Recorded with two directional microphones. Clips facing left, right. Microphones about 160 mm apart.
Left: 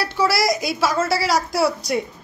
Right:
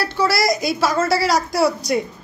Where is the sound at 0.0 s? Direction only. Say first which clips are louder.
Right 1 dB; 5° left (ahead or behind).